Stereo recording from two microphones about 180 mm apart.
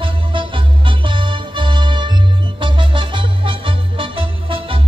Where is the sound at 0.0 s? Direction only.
25° right (ahead or behind).